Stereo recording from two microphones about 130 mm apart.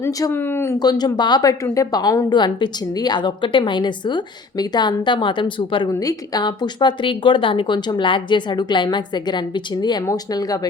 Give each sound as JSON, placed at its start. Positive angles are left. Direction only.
{"t": 0.0, "sound": "speech", "side_deg": 20}
{"t": 0.8, "sound": "a woman's voice", "side_deg": 30}
{"t": 5.9, "sound": "a woman's voice", "side_deg": 25}